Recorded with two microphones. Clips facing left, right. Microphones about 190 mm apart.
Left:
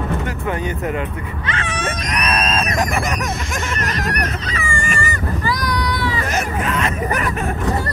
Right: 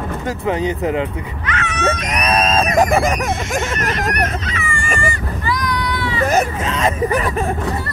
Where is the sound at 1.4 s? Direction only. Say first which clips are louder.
Right 1 dB; 30° left (ahead or behind).